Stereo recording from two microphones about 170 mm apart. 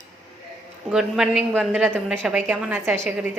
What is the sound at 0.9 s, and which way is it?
A woman's voice, 5° right (ahead or behind).